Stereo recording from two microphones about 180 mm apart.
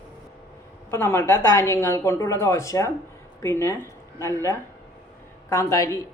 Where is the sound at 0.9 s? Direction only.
10° left (ahead or behind).